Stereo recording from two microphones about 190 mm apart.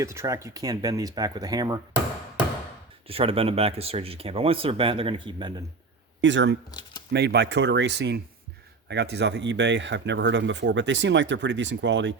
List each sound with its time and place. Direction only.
0.0 s speech: 15° right (ahead or behind)
3.1 s speech: 30° right (ahead or behind)
6.2 s speech: 70° right (ahead or behind)
6.7 s speech: 25° left (ahead or behind)
7.1 s speech: 60° right (ahead or behind)